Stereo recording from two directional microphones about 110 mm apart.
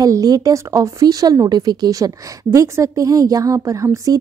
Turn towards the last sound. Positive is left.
turn(degrees=-30)  # may be behind; listen again after turning